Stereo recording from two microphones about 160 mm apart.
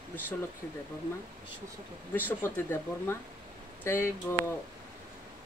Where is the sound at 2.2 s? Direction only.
15° left (ahead or behind).